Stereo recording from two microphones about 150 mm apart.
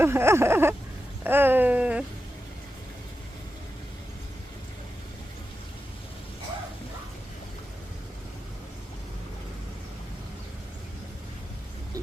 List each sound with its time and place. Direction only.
0.0 s babbling: 15° right (ahead or behind)